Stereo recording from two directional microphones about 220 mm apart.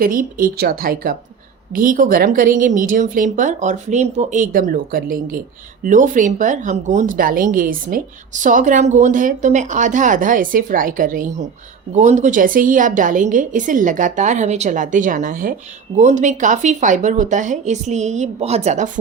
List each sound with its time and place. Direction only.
0.0 s speech: 40° right (ahead or behind)